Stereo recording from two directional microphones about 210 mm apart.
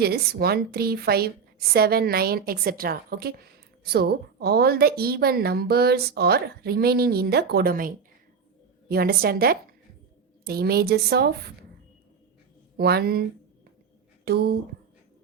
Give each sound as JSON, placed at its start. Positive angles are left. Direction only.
{"t": 0.0, "sound": "a woman's voice", "side_deg": -50}
{"t": 12.7, "sound": "a woman's voice", "side_deg": -50}
{"t": 14.3, "sound": "a woman's voice", "side_deg": -50}